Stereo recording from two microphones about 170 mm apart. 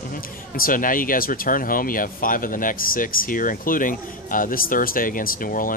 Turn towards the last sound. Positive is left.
turn(degrees=55)  # may be behind; listen again after turning